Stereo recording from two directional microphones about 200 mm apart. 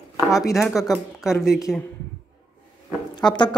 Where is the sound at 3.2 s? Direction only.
20° left (ahead or behind).